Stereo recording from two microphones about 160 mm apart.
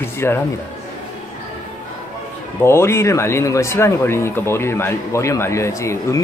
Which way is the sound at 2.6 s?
15° left (ahead or behind).